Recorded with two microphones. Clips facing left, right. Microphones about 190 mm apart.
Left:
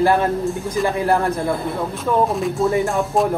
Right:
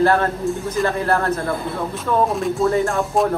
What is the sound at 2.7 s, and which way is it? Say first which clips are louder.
Speech: even; 15° left (ahead or behind).